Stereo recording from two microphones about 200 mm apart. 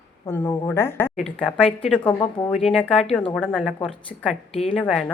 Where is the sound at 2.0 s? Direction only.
25° left (ahead or behind).